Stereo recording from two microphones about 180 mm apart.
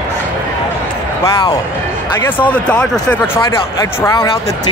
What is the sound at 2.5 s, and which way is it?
Speech, 5° left (ahead or behind).